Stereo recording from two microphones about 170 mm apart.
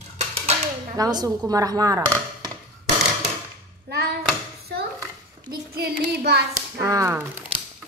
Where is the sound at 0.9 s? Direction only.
20° right (ahead or behind).